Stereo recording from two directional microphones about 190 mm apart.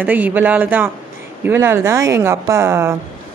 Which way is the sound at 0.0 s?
10° right (ahead or behind).